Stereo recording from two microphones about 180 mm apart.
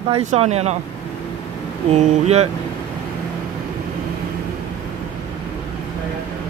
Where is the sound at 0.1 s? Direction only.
35° right (ahead or behind).